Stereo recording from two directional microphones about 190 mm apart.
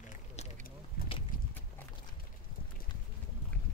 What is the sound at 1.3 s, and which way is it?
Clip-clop, 45° left (ahead or behind).